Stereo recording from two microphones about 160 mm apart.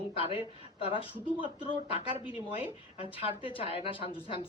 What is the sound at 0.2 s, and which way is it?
Speech, 35° left (ahead or behind).